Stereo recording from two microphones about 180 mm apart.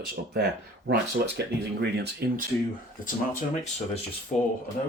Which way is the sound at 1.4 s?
70° right (ahead or behind).